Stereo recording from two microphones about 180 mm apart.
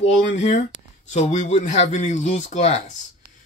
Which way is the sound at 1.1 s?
40° left (ahead or behind).